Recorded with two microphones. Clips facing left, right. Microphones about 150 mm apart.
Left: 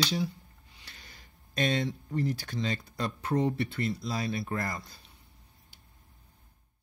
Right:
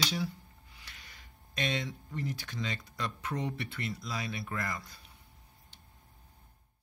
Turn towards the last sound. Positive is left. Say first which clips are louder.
# left 4 dB
turn(degrees=35)  # may be behind; listen again after turning